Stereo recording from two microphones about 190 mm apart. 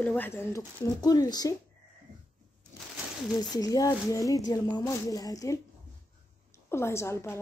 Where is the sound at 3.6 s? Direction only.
20° left (ahead or behind).